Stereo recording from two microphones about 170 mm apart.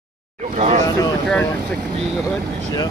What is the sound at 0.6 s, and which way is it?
Speech, 45° right (ahead or behind).